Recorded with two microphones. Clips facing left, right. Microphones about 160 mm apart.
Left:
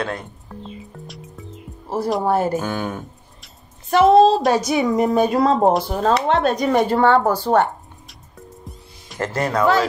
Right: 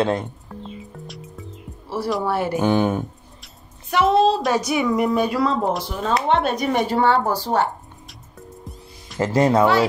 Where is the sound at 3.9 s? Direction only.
45° left (ahead or behind).